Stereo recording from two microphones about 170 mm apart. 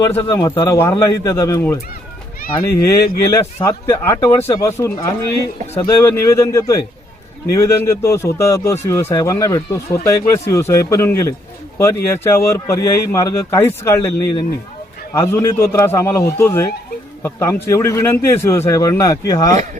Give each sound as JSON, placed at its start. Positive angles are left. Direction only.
{"t": 0.0, "sound": "speech", "side_deg": 20}